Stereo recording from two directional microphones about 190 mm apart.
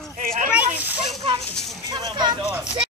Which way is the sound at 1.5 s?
5° left (ahead or behind).